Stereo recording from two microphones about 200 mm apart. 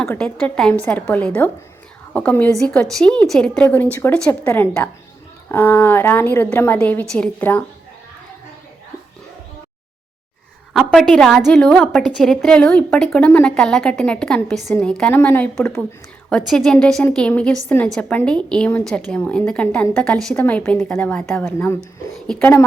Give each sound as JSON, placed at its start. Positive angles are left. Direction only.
{"t": 0.0, "sound": "a woman's voice", "side_deg": 5}
{"t": 10.8, "sound": "a woman's voice", "side_deg": 0}